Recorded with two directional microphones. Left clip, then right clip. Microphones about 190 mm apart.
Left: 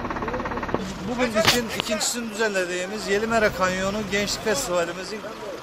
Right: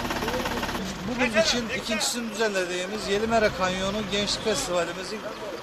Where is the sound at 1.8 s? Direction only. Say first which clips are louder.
Left 1 dB; 5° left (ahead or behind).